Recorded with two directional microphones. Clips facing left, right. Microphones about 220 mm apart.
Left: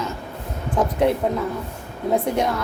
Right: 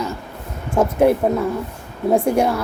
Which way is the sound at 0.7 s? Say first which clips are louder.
Right 5 dB; 25° right (ahead or behind).